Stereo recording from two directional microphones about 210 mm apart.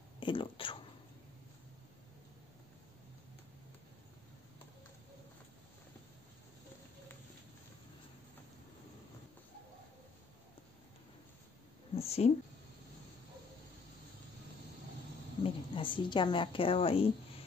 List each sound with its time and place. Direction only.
0.2 s speech: 25° left (ahead or behind)
11.9 s a sound: 30° left (ahead or behind)
15.4 s a woman's voice: 25° left (ahead or behind)